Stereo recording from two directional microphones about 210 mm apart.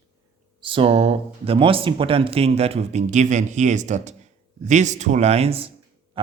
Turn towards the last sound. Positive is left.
turn(degrees=-25)  # may be behind; listen again after turning